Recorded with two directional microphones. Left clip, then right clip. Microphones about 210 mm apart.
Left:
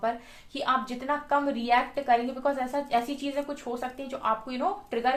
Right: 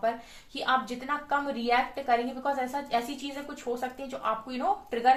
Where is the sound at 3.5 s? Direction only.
40° left (ahead or behind).